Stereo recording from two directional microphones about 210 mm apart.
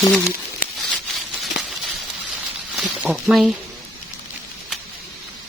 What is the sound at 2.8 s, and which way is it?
Speech, 5° right (ahead or behind).